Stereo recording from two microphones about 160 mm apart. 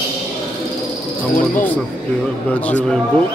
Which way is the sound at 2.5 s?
10° left (ahead or behind).